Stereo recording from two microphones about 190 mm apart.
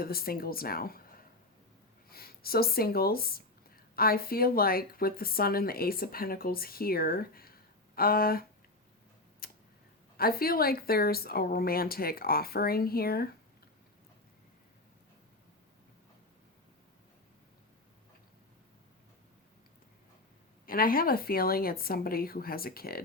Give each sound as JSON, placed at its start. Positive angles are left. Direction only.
{"t": 0.0, "sound": "speech", "side_deg": 50}
{"t": 2.0, "sound": "speech", "side_deg": 50}
{"t": 9.4, "sound": "tick-tock", "side_deg": 50}
{"t": 10.2, "sound": "speech", "side_deg": 50}
{"t": 20.7, "sound": "speech", "side_deg": 50}